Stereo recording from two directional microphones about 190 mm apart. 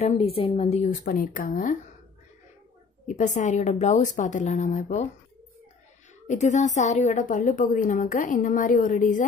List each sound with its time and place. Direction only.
0.0 s a woman's voice: 30° left (ahead or behind); by 1.8 s 45° left (ahead or behind)
3.1 s speech: 40° left (ahead or behind)
6.2 s a woman's voice: 40° left (ahead or behind)